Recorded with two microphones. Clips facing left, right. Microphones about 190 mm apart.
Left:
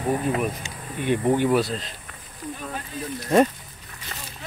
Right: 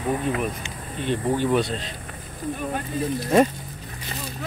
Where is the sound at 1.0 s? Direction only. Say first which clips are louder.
Left 2 dB; 10° left (ahead or behind).